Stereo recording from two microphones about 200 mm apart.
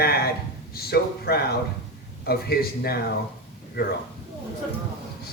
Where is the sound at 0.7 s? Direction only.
50° left (ahead or behind).